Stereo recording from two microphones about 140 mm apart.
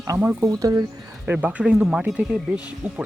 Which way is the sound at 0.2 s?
15° right (ahead or behind).